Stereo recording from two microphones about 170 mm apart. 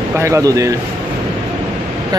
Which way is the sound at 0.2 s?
20° right (ahead or behind).